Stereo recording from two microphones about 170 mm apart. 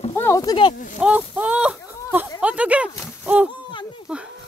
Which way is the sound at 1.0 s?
10° right (ahead or behind).